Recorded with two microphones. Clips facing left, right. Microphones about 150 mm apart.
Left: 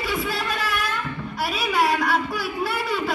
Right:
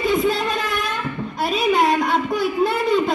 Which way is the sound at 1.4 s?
20° right (ahead or behind).